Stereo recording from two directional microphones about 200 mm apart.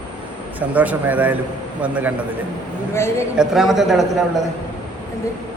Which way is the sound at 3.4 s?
Centre (ahead or behind).